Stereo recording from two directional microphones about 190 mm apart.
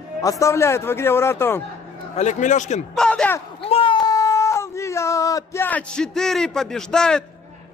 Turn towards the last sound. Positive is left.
turn(degrees=5)  # may be behind; listen again after turning